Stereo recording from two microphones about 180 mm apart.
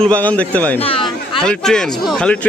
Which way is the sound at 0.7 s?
30° left (ahead or behind).